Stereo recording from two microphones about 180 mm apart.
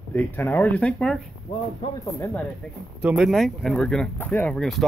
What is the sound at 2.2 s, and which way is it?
Speech, 10° left (ahead or behind).